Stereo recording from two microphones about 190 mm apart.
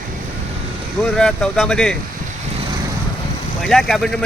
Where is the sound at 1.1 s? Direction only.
5° left (ahead or behind).